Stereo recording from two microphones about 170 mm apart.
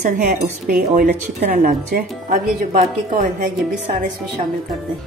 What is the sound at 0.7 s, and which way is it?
Speech, 60° right (ahead or behind).